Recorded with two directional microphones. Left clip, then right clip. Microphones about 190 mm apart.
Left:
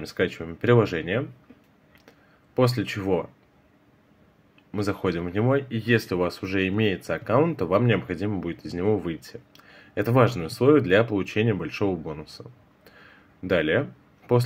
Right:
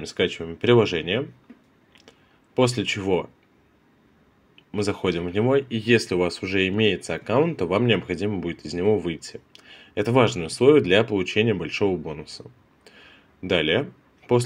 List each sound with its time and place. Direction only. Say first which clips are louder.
0.0 s speech: right 2 dB; 15° right (ahead or behind)
2.0 s a sound: right 1 dB; 15° right (ahead or behind)
4.6 s speech: right 2 dB; 15° right (ahead or behind)